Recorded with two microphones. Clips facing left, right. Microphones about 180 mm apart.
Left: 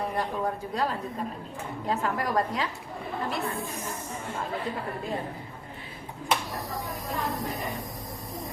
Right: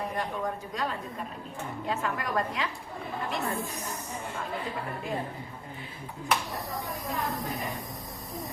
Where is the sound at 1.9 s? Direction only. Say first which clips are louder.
Left 3 dB; 35° left (ahead or behind).